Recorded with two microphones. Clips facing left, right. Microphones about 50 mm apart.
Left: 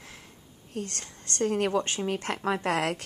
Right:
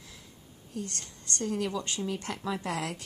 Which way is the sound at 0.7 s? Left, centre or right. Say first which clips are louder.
Left 3 dB; left.